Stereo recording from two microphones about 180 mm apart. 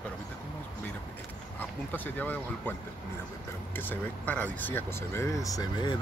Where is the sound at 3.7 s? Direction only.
10° left (ahead or behind).